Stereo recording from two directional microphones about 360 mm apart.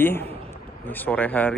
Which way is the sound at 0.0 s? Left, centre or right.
Centre.